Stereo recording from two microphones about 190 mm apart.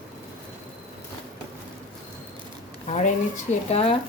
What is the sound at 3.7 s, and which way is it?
Speech, 30° left (ahead or behind).